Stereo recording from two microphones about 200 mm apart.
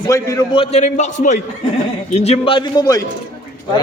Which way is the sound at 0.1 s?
15° left (ahead or behind).